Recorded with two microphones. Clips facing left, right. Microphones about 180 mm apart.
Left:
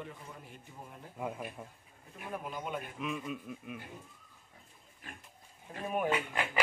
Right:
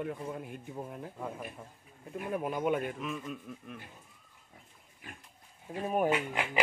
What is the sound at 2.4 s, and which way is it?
Speech, 60° right (ahead or behind).